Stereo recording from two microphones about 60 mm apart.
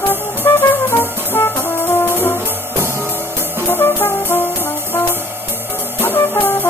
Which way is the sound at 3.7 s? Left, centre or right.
Left.